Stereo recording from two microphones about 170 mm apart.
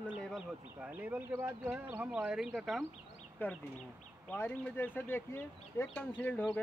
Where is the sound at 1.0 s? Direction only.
10° right (ahead or behind).